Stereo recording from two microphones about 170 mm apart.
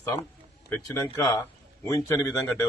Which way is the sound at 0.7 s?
15° left (ahead or behind).